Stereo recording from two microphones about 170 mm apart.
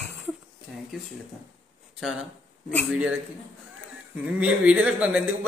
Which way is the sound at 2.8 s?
5° right (ahead or behind).